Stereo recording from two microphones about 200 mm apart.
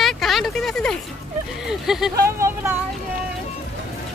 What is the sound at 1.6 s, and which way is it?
Speech, centre (ahead or behind).